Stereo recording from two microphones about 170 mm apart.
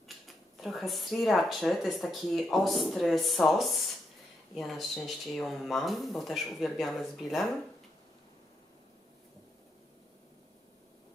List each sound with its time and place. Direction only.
0.6 s speech: centre (ahead or behind)